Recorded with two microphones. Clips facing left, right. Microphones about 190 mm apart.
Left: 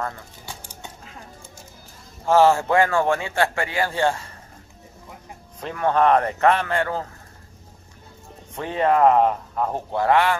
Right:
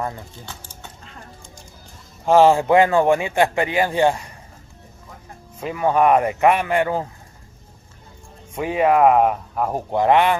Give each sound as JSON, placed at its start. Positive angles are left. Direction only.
{"t": 0.5, "sound": "dog", "side_deg": 10}
{"t": 2.2, "sound": "speech", "side_deg": -15}
{"t": 5.6, "sound": "speech", "side_deg": -10}
{"t": 8.5, "sound": "speech", "side_deg": -10}